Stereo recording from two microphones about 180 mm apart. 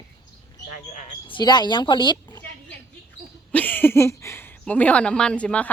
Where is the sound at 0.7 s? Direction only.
40° left (ahead or behind).